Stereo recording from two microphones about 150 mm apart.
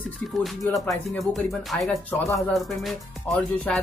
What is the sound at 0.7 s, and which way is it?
Speech, centre (ahead or behind).